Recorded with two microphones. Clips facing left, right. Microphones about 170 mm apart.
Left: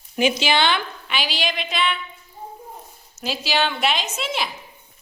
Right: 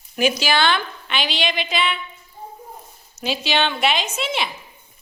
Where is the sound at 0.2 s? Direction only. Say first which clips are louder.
Even; 20° left (ahead or behind).